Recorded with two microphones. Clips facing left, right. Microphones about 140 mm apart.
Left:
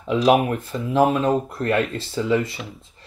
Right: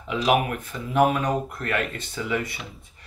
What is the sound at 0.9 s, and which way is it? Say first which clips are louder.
Speech: left 3 dB; 25° left (ahead or behind).